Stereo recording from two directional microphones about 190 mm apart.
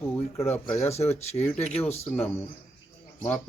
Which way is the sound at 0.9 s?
35° left (ahead or behind).